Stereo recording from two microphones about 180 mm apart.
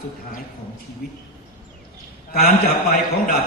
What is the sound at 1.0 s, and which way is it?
Speech, 60° left (ahead or behind).